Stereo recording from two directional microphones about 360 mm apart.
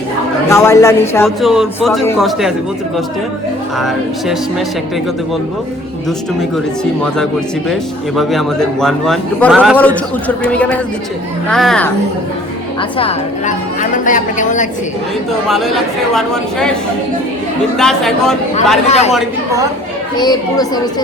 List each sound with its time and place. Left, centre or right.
0.4 s a man's voice: centre
3.8 s a man's voice: centre
7.7 s a man's voice: centre
13.0 s a woman's voice: centre
15.3 s a man's voice: centre
17.7 s a man's voice: centre
18.9 s a woman's voice: centre
19.1 s a man's voice: centre
20.1 s speech: centre